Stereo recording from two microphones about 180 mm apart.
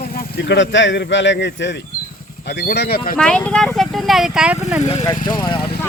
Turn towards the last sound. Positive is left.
turn(degrees=25)  # may be behind; listen again after turning